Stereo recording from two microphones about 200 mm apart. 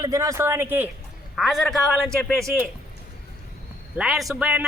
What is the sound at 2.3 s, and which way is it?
Speech, 15° right (ahead or behind).